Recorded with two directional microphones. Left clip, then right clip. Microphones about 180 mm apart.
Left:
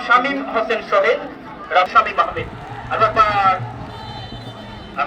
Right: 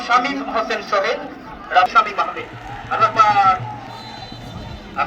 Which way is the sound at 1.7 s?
15° left (ahead or behind).